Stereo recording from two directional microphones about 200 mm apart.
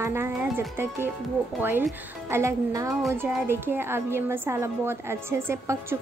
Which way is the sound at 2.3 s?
15° right (ahead or behind).